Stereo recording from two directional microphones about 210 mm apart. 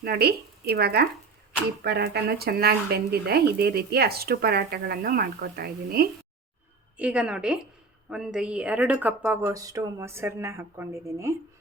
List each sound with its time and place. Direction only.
0.0 s speech: 50° right (ahead or behind)
6.9 s a woman's voice: 5° right (ahead or behind)